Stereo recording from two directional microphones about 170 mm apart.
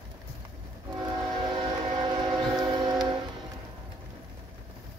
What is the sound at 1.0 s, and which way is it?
Train, 25° right (ahead or behind).